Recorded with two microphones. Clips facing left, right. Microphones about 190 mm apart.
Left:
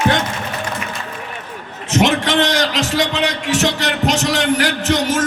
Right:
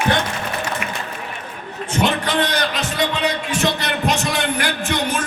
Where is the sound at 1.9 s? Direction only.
90° left.